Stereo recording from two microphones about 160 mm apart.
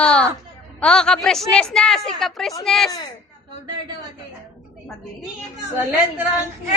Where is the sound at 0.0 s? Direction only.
5° left (ahead or behind).